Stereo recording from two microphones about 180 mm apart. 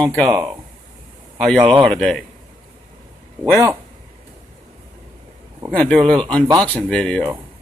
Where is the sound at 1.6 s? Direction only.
30° right (ahead or behind).